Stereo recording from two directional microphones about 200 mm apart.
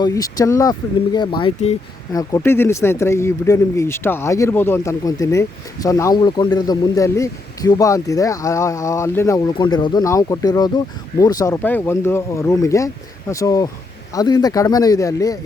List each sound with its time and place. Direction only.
0.0 s speech: 20° left (ahead or behind)
2.1 s speech: 15° left (ahead or behind)